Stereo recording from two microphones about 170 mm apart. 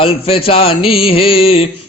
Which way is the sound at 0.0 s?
35° left (ahead or behind).